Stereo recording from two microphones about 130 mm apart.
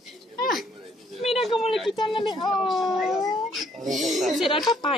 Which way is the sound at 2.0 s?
40° left (ahead or behind).